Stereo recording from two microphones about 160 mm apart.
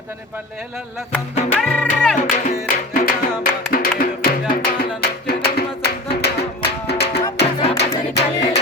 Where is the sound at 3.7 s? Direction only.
65° left (ahead or behind).